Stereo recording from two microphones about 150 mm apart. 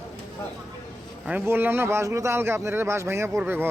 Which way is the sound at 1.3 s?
15° right (ahead or behind).